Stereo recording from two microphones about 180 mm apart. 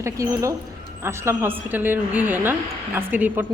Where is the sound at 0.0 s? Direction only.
15° right (ahead or behind).